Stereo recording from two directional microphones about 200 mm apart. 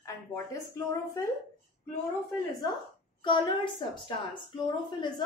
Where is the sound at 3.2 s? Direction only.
25° left (ahead or behind).